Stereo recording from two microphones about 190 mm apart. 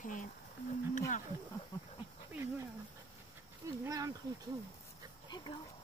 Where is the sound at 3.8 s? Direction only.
15° right (ahead or behind).